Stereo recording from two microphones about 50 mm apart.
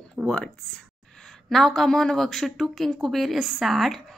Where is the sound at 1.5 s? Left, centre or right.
Centre.